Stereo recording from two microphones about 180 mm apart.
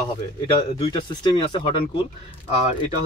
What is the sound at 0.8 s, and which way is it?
Speech, 30° left (ahead or behind).